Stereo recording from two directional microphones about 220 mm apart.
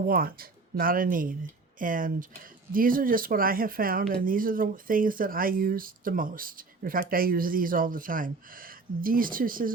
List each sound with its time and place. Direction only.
0.1 s speech: 40° right (ahead or behind)